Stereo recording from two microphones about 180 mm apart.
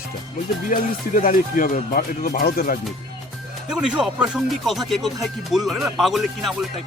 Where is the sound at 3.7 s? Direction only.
5° right (ahead or behind).